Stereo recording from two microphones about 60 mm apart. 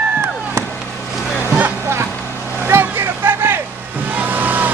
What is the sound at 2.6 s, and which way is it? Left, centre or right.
Vehicle, right.